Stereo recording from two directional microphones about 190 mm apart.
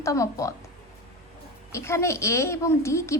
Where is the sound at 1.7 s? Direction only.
15° left (ahead or behind).